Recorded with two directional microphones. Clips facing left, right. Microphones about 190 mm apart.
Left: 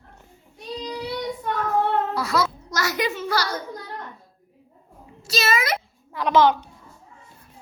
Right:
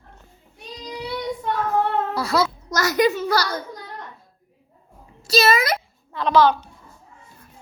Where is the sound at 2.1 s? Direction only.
35° right (ahead or behind).